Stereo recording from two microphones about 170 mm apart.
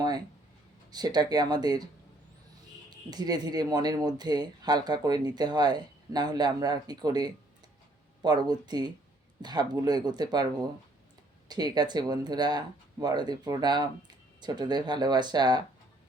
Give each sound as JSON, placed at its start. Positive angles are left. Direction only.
{"t": 0.9, "sound": "speech", "side_deg": -25}
{"t": 3.1, "sound": "speech", "side_deg": -25}